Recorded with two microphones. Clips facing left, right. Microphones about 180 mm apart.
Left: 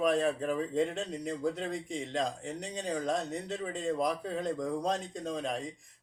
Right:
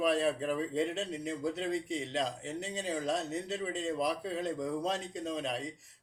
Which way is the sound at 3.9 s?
45° left (ahead or behind).